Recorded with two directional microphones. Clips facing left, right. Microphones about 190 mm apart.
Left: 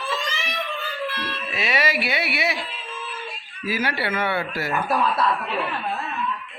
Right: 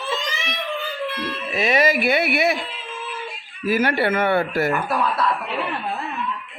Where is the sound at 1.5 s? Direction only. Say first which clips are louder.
Right 6 dB; 45° right (ahead or behind).